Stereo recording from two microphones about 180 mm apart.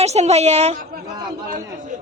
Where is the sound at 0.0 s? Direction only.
35° right (ahead or behind).